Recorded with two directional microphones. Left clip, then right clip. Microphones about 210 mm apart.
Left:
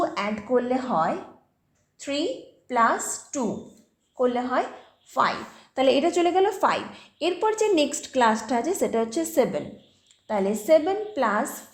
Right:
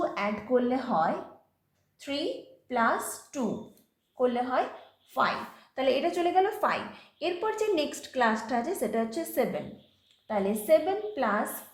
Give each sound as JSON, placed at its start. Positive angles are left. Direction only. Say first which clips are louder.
{"t": 0.0, "sound": "a woman's voice", "louder": "left 4 dB", "side_deg": 35}